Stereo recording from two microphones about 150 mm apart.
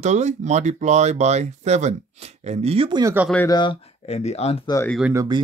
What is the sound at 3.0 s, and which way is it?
Speech, 15° right (ahead or behind).